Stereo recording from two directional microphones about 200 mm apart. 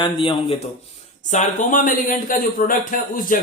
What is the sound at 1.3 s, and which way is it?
Speech, 40° left (ahead or behind).